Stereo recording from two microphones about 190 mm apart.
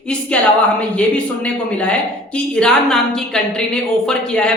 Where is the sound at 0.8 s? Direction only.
5° left (ahead or behind).